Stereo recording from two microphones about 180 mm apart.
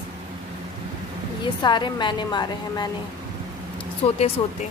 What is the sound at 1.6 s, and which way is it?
A woman's voice, 25° left (ahead or behind).